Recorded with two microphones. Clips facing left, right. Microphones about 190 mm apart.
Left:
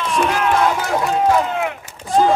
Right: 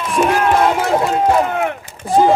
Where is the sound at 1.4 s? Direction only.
55° right (ahead or behind).